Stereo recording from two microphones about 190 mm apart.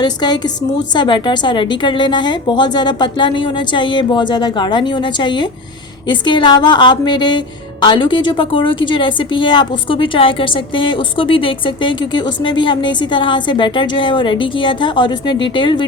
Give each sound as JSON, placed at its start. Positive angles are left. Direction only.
{"t": 0.0, "sound": "a woman's voice", "side_deg": 20}